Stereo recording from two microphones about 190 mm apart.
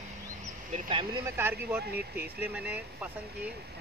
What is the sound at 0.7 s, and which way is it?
Speech, 30° right (ahead or behind).